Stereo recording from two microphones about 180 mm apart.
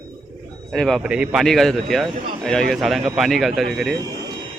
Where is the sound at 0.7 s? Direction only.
Centre (ahead or behind).